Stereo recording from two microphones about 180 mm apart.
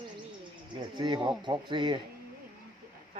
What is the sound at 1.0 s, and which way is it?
Speech, 25° right (ahead or behind).